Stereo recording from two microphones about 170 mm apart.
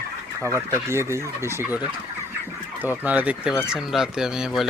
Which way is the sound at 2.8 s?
10° right (ahead or behind).